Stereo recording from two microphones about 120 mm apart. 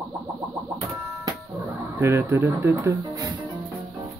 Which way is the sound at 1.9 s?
20° right (ahead or behind).